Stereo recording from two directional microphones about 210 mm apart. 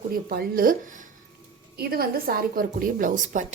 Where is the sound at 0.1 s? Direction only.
45° right (ahead or behind).